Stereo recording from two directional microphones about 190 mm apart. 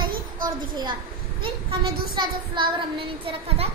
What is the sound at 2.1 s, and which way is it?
Speech, 25° right (ahead or behind).